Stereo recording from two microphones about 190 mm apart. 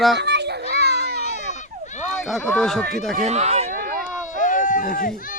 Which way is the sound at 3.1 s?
35° right (ahead or behind).